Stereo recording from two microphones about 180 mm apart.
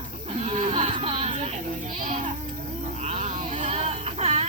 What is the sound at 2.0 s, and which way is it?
Speech, 45° right (ahead or behind).